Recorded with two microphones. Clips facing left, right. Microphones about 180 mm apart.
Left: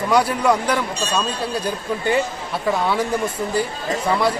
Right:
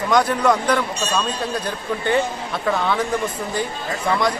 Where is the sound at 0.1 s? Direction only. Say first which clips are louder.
Even; 10° left (ahead or behind).